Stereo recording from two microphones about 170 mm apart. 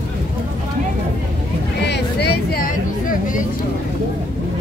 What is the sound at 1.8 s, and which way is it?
Music, 75° left (ahead or behind).